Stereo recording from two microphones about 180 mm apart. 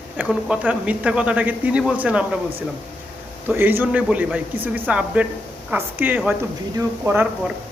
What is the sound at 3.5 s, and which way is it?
A man's voice, 10° right (ahead or behind).